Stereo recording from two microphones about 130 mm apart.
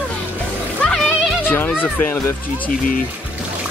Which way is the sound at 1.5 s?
15° left (ahead or behind).